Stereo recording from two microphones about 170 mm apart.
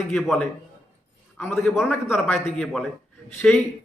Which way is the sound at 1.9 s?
Centre (ahead or behind).